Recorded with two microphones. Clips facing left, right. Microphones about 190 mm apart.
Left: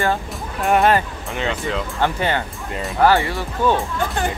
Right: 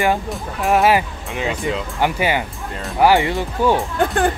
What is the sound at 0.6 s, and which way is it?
Speech, centre (ahead or behind).